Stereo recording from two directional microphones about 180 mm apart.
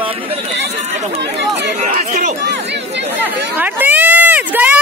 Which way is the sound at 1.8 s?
50° right (ahead or behind).